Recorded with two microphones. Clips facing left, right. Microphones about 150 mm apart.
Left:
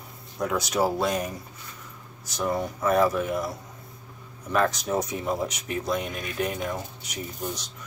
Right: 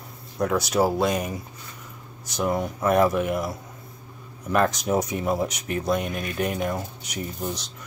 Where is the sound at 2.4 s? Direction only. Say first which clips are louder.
Right 2 dB; 10° right (ahead or behind).